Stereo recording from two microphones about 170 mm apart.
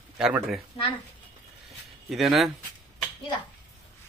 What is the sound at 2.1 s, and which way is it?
Speech, centre (ahead or behind).